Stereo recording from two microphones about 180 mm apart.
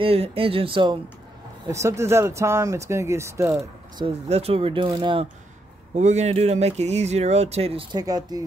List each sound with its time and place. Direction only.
0.0 s speech: 30° right (ahead or behind)
1.7 s speech: 15° right (ahead or behind)
4.0 s speech: 35° right (ahead or behind)
5.9 s speech: 40° right (ahead or behind)
8.0 s speech: 20° right (ahead or behind)